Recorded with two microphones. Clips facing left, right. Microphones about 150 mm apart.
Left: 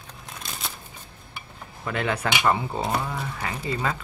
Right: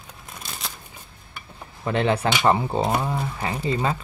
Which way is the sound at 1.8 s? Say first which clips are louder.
Right 5 dB; 30° right (ahead or behind).